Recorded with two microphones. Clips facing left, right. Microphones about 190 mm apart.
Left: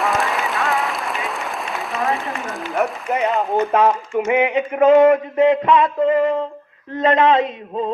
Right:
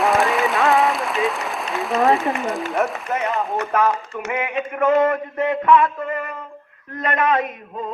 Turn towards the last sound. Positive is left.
turn(degrees=25)  # may be behind; listen again after turning